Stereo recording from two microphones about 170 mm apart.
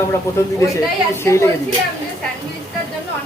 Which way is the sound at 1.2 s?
15° left (ahead or behind).